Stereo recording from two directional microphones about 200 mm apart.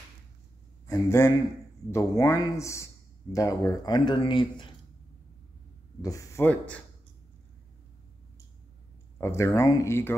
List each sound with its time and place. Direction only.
0.8 s a man's voice: 15° left (ahead or behind)
6.0 s speech: 15° left (ahead or behind)
9.2 s speech: 15° left (ahead or behind)